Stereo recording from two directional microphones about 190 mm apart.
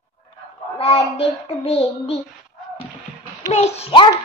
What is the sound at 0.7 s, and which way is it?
Child singing, 30° left (ahead or behind).